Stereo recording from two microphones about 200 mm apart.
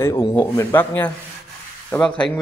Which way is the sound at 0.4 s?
10° left (ahead or behind).